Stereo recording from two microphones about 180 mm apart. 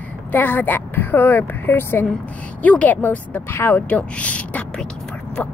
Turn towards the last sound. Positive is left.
turn(degrees=5)  # may be behind; listen again after turning